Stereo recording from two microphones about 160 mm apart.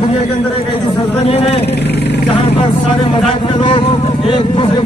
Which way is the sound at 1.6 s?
90° left.